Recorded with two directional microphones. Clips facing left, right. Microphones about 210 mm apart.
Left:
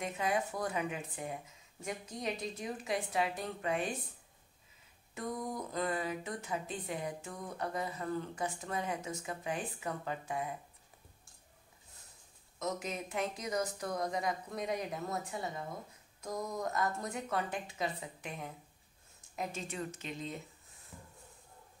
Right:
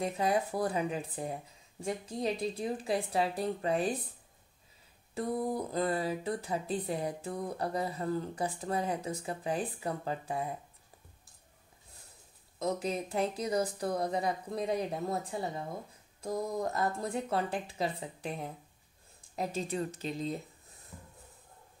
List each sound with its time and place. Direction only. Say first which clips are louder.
0.0 s speech: right 4 dB; 35° right (ahead or behind)
5.1 s speech: right 6 dB; 30° right (ahead or behind)
12.5 s speech: right 5 dB; 30° right (ahead or behind)